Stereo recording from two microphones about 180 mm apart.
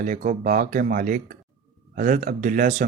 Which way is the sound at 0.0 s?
45° right (ahead or behind).